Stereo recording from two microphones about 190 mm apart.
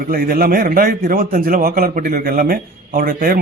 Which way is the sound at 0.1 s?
50° right (ahead or behind).